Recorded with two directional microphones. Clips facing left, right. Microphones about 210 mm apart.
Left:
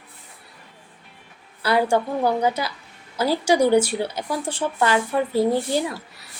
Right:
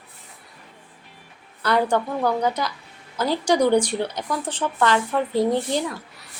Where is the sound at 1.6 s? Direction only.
10° left (ahead or behind).